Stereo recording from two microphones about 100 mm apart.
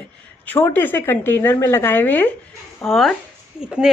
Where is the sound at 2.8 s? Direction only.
Centre (ahead or behind).